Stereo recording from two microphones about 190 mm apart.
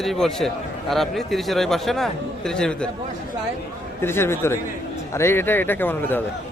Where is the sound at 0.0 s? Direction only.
Centre (ahead or behind).